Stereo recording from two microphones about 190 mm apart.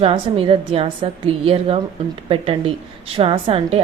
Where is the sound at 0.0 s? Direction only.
30° right (ahead or behind).